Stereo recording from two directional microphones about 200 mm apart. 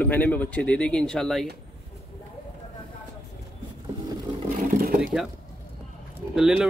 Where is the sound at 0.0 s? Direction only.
10° left (ahead or behind).